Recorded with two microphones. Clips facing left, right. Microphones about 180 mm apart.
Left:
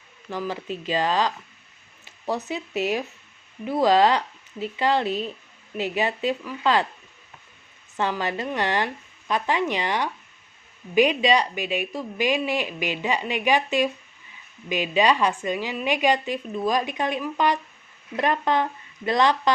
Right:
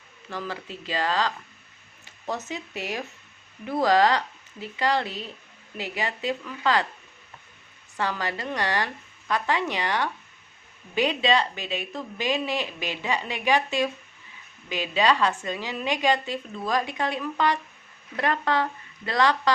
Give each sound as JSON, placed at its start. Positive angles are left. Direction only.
{"t": 0.3, "sound": "a woman's voice", "side_deg": 15}
{"t": 7.9, "sound": "a woman's voice", "side_deg": 20}